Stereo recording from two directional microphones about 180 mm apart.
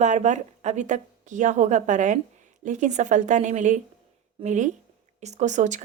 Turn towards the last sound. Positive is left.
turn(degrees=-40)  # may be behind; listen again after turning